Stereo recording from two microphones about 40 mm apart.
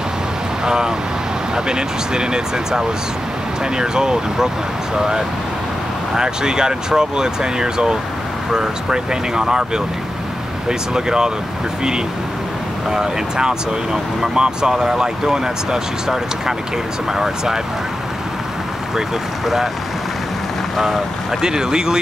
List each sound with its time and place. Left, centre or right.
0.7 s speech: centre
10.7 s speech: centre
12.9 s speech: centre
19.4 s speech: centre
21.4 s speech: centre